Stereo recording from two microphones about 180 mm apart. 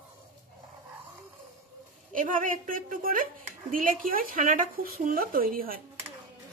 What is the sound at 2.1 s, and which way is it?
A woman's voice, 50° right (ahead or behind).